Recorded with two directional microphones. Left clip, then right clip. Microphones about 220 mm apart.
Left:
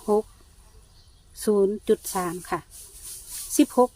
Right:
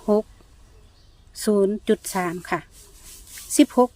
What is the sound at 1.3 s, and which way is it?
Speech, 20° right (ahead or behind).